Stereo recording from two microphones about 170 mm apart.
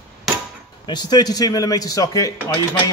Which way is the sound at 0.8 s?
25° left (ahead or behind).